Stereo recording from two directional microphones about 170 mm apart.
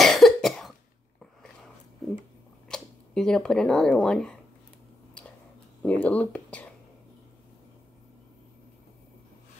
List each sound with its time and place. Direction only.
0.0 s cough: centre (ahead or behind)
1.2 s a sound: centre (ahead or behind)
2.7 s speech: 5° left (ahead or behind)
5.8 s speech: 10° left (ahead or behind)